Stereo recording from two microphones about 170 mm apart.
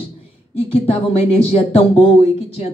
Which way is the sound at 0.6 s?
35° left (ahead or behind).